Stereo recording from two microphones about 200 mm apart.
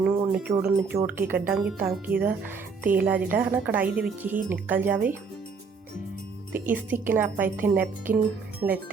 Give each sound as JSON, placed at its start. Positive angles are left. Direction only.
{"t": 0.2, "sound": "a sound", "side_deg": -10}
{"t": 0.6, "sound": "speech", "side_deg": -10}
{"t": 6.5, "sound": "speech", "side_deg": -10}